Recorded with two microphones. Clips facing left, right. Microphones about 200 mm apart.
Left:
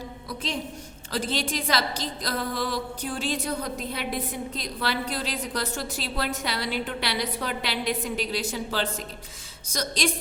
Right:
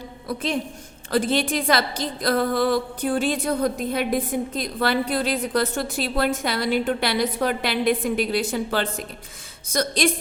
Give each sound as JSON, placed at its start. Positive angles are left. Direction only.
{"t": 0.3, "sound": "a woman's voice", "side_deg": -55}